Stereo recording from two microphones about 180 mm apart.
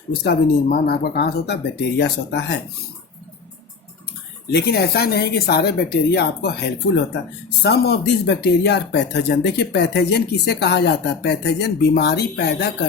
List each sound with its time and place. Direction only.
0.1 s speech: 65° left (ahead or behind)
4.5 s speech: 60° left (ahead or behind)